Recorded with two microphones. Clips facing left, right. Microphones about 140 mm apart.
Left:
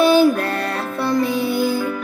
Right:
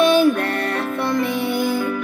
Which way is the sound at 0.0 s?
35° left (ahead or behind).